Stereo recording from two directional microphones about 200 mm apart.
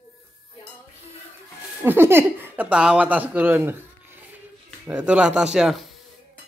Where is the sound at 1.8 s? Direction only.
10° right (ahead or behind).